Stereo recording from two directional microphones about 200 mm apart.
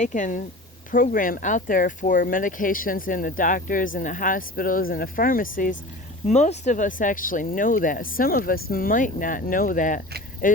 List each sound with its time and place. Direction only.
0.0 s speech: 40° left (ahead or behind)